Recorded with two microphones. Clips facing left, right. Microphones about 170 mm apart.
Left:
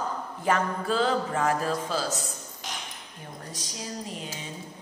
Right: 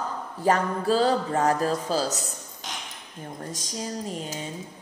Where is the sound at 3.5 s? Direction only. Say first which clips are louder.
Right 5 dB; 45° right (ahead or behind).